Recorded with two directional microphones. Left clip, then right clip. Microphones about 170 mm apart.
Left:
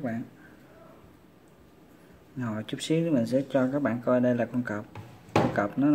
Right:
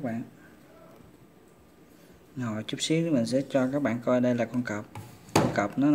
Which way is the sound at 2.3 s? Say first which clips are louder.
Even; centre (ahead or behind).